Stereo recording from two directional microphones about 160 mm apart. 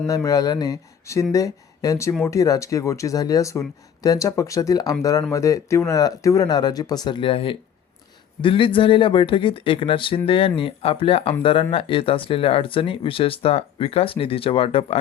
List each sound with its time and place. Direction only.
0.1 s speech: 20° left (ahead or behind)